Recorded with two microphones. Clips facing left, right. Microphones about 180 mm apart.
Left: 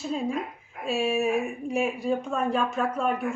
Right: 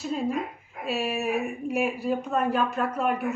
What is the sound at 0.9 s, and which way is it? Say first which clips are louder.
A woman's voice: left 3 dB; 5° right (ahead or behind).